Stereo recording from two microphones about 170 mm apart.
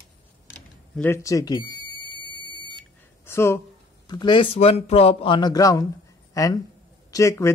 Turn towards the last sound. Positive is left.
turn(degrees=15)  # may be behind; listen again after turning